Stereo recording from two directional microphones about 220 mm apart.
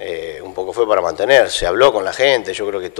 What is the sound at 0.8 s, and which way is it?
Speech, 25° left (ahead or behind).